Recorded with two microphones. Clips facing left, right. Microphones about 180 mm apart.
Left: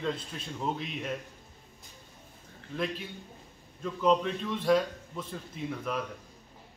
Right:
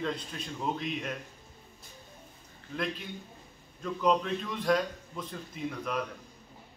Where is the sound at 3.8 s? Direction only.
5° left (ahead or behind).